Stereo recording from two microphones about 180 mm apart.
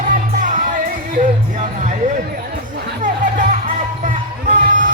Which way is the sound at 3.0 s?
45° right (ahead or behind).